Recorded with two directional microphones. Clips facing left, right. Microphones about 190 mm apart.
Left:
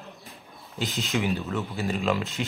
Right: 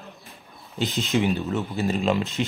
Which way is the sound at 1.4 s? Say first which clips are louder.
Right 4 dB; 25° right (ahead or behind).